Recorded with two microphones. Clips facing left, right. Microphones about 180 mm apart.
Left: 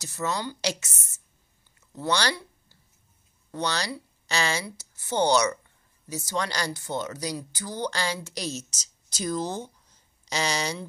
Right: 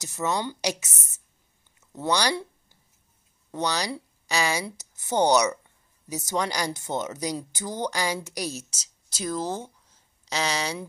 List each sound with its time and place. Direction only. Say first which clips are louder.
0.0 s a woman's voice: right 2 dB; 20° right (ahead or behind)
1.9 s a sound: right 2 dB; 20° right (ahead or behind)
3.5 s speech: right 2 dB; 15° right (ahead or behind)